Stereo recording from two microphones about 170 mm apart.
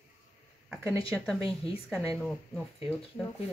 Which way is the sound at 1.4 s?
35° left (ahead or behind).